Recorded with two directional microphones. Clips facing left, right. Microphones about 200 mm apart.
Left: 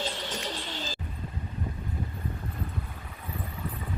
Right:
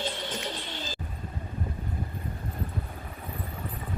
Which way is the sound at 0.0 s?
55° right (ahead or behind).